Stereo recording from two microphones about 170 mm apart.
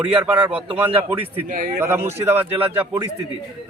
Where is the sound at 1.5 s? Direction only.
60° right (ahead or behind).